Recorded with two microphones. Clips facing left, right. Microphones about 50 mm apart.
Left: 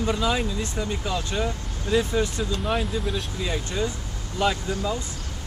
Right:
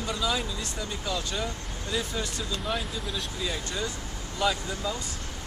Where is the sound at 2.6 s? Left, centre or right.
Centre.